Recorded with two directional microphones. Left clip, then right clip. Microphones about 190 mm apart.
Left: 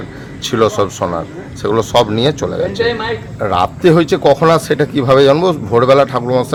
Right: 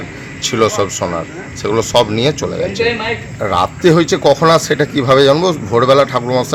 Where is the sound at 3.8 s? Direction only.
25° left (ahead or behind).